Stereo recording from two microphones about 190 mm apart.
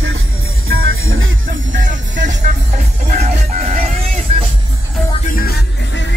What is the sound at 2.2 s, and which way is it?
Music, 40° right (ahead or behind).